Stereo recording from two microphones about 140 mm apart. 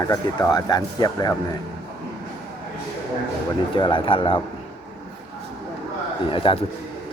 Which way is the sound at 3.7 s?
35° left (ahead or behind).